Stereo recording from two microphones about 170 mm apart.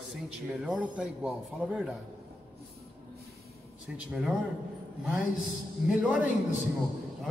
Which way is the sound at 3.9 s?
Centre (ahead or behind).